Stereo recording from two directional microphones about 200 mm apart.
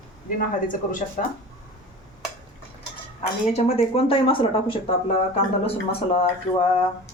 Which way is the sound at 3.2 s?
35° left (ahead or behind).